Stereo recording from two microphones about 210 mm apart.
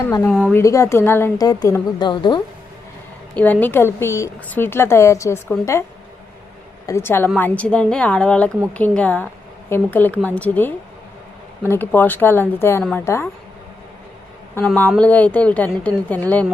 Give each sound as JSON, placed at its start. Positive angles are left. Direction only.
{"t": 0.0, "sound": "a woman's voice", "side_deg": 15}
{"t": 3.3, "sound": "a woman's voice", "side_deg": 5}
{"t": 6.8, "sound": "a woman's voice", "side_deg": 10}
{"t": 14.5, "sound": "a woman's voice", "side_deg": 5}